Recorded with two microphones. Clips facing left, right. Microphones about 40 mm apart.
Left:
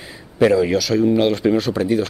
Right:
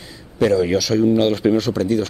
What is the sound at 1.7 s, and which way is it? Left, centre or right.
Speech, centre.